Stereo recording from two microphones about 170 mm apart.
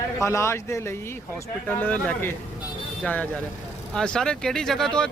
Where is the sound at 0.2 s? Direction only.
15° left (ahead or behind).